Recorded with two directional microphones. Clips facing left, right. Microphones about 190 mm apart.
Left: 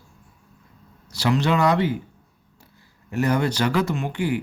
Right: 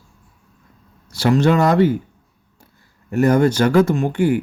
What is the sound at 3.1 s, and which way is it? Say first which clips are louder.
Speech: right 7 dB; 50° right (ahead or behind).